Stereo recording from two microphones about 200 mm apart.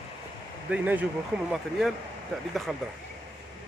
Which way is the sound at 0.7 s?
10° right (ahead or behind).